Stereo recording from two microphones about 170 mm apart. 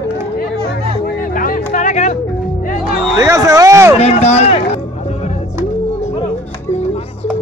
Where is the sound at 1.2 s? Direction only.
55° left (ahead or behind).